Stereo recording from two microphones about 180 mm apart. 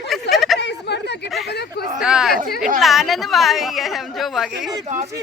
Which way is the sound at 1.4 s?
65° left (ahead or behind).